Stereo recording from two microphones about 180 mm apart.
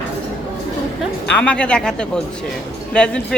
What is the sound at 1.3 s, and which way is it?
Speech, 5° left (ahead or behind).